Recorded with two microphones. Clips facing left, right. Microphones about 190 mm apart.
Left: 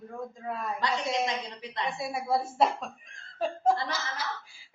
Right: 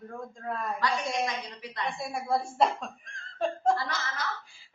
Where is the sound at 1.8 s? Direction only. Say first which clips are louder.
Left 1 dB; 5° left (ahead or behind).